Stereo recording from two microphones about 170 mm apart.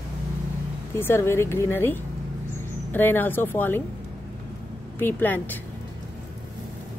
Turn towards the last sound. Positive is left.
turn(degrees=10)  # may be behind; listen again after turning